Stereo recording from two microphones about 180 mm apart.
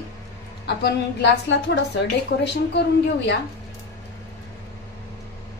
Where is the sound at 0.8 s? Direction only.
70° left (ahead or behind).